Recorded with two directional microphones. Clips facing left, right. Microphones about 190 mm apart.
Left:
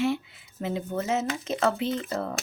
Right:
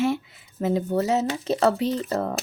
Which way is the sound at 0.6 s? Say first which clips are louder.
Right 6 dB; 40° right (ahead or behind).